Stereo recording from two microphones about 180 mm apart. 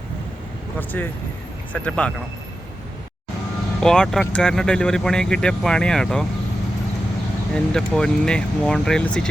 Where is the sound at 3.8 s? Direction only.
5° left (ahead or behind).